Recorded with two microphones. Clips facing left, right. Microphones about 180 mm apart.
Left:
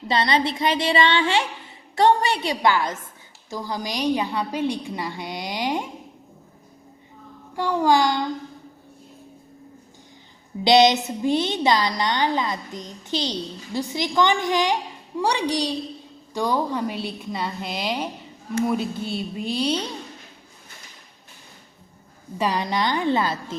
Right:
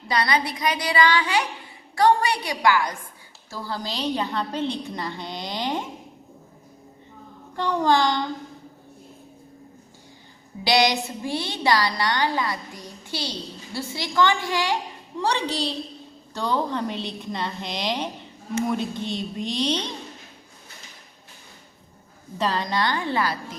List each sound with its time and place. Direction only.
0.1 s a woman's voice: 25° left (ahead or behind)
7.5 s a woman's voice: 10° left (ahead or behind)
10.6 s a woman's voice: 20° left (ahead or behind)
22.4 s a woman's voice: 10° left (ahead or behind)